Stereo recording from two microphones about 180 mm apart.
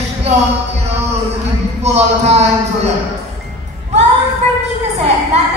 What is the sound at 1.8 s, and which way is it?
Music, 35° right (ahead or behind).